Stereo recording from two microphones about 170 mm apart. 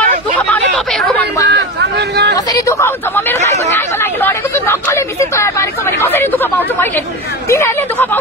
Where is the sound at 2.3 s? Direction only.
20° left (ahead or behind).